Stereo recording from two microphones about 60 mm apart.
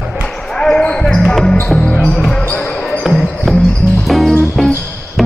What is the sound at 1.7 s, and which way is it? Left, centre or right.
Music, centre.